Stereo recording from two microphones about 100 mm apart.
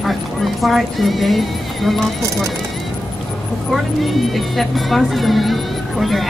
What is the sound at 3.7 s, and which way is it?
Speech, centre (ahead or behind).